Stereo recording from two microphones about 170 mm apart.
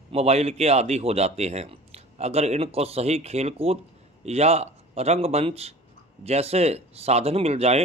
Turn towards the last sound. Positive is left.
turn(degrees=-40)  # may be behind; listen again after turning